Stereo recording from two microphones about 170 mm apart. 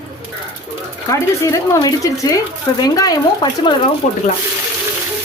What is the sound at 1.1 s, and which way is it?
Speech, 15° left (ahead or behind).